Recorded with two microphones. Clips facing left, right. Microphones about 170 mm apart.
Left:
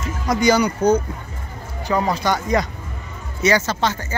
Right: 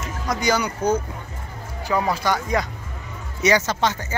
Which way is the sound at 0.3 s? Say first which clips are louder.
Left 6 dB; centre (ahead or behind).